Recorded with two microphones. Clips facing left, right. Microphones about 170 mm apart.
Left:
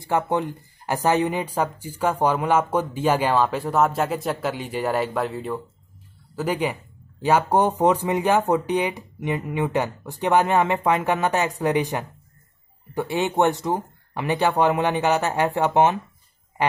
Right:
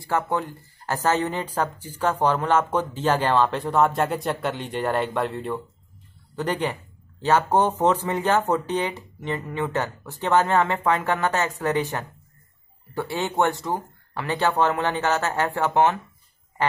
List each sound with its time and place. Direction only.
0.0 s speech: 20° left (ahead or behind)